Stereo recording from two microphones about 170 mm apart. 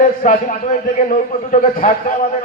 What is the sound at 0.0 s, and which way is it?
Speech, 50° left (ahead or behind).